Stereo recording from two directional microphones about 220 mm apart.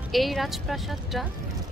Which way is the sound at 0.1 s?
Centre (ahead or behind).